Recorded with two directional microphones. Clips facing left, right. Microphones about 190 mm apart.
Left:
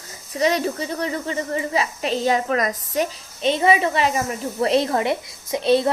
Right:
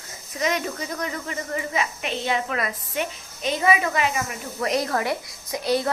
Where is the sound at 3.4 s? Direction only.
25° left (ahead or behind).